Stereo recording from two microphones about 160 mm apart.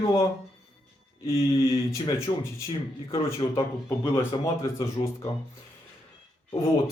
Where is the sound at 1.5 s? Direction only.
20° left (ahead or behind).